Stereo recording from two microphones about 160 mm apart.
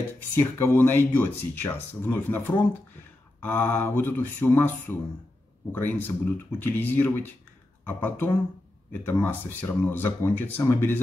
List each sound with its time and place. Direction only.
0.4 s speech: 15° left (ahead or behind)